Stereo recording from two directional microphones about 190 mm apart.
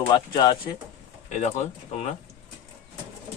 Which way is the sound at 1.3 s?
40° left (ahead or behind).